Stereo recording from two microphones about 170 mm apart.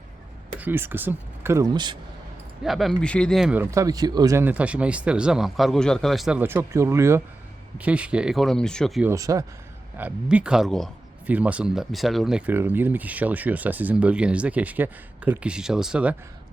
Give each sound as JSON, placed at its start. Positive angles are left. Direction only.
{"t": 0.6, "sound": "speech", "side_deg": -10}
{"t": 1.7, "sound": "speech", "side_deg": -25}
{"t": 2.6, "sound": "speech", "side_deg": 0}
{"t": 9.0, "sound": "speech", "side_deg": -20}
{"t": 10.0, "sound": "speech", "side_deg": -5}